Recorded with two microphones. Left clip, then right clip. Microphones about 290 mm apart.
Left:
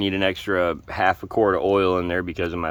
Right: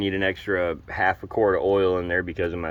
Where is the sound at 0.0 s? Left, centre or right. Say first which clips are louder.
Left 2 dB; centre.